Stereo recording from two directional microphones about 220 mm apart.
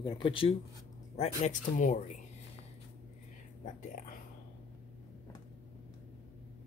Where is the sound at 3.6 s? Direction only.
35° left (ahead or behind).